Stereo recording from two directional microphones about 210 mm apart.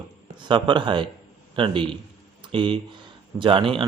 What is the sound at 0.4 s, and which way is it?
Speech, 20° right (ahead or behind).